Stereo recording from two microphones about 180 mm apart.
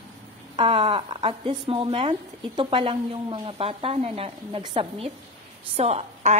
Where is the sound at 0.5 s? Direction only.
30° right (ahead or behind).